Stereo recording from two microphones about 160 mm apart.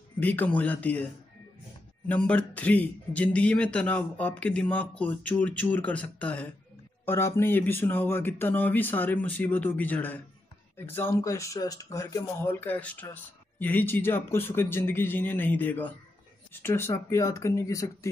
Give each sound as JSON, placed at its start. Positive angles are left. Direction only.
{"t": 0.2, "sound": "speech", "side_deg": 10}
{"t": 2.0, "sound": "speech", "side_deg": 10}